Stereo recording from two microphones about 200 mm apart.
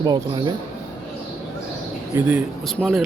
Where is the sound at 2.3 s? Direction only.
5° right (ahead or behind).